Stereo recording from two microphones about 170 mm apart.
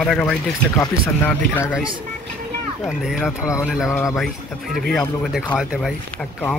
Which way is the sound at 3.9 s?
15° left (ahead or behind).